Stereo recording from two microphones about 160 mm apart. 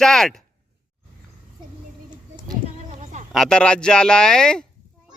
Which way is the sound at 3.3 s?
5° left (ahead or behind).